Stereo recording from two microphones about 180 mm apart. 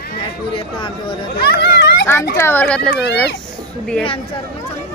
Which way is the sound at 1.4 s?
65° left (ahead or behind).